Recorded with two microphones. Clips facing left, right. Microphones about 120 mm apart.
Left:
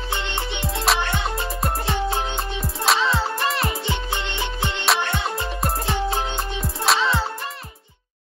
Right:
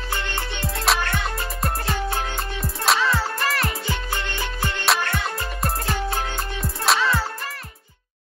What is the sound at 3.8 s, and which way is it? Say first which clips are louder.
Music: left 1 dB; 25° left (ahead or behind).